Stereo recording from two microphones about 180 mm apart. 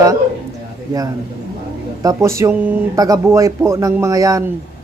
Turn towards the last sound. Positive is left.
turn(degrees=-20)  # may be behind; listen again after turning